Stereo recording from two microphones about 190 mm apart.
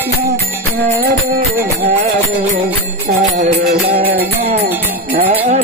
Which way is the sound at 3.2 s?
50° right (ahead or behind).